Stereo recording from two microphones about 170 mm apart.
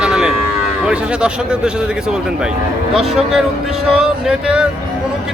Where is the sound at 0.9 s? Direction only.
5° right (ahead or behind).